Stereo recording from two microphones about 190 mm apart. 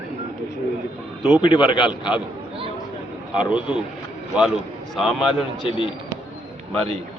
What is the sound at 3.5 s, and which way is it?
A man's voice, 5° right (ahead or behind).